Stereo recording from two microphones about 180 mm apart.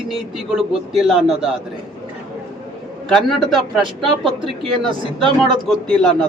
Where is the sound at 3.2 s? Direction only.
Centre (ahead or behind).